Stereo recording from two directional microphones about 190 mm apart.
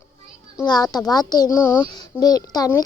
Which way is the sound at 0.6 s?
20° left (ahead or behind).